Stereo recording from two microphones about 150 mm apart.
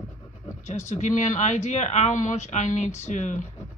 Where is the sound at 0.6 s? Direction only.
50° left (ahead or behind).